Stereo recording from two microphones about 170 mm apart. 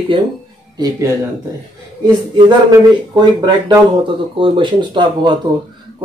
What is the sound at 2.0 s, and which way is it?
Speech, 25° right (ahead or behind).